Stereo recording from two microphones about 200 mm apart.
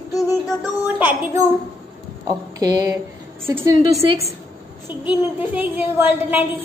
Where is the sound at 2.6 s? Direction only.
20° right (ahead or behind).